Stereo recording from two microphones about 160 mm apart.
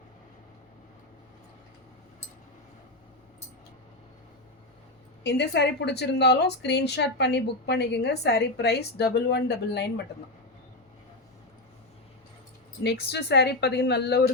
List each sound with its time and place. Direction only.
5.2 s speech: 90° left
12.8 s speech: 85° left